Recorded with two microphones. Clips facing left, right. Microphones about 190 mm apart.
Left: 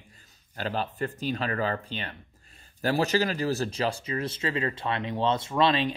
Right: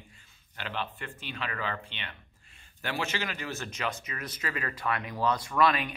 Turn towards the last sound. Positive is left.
turn(degrees=25)  # may be behind; listen again after turning